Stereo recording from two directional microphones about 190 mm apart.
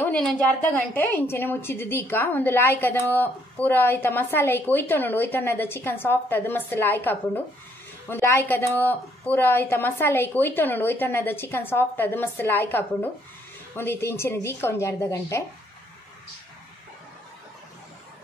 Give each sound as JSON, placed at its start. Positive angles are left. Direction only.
{"t": 0.0, "sound": "a woman's voice", "side_deg": 5}